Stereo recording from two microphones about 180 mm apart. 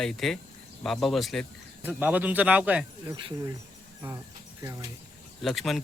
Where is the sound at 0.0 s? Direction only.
Centre (ahead or behind).